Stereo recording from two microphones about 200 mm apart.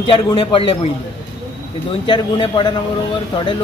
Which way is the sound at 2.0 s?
25° left (ahead or behind).